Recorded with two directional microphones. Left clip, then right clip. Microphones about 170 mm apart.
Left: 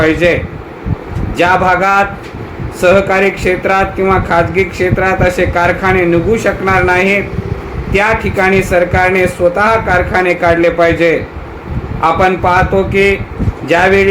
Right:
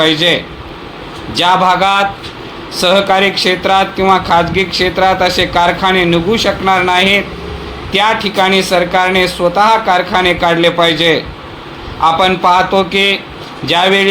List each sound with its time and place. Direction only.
0.0 s speech: 30° right (ahead or behind)
1.4 s speech: 35° right (ahead or behind)
12.2 s speech: 35° right (ahead or behind)